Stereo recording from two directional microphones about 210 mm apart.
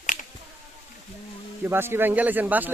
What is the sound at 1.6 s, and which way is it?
Speech, 10° right (ahead or behind).